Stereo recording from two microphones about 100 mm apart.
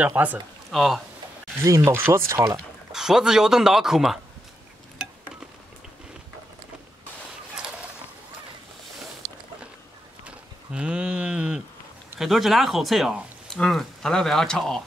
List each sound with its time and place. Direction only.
0.0 s speech: 15° right (ahead or behind)
0.7 s speech: centre (ahead or behind)
1.8 s speech: 25° right (ahead or behind)
2.9 s speech: 5° right (ahead or behind)
10.2 s livestock: 10° right (ahead or behind)
12.2 s speech: centre (ahead or behind)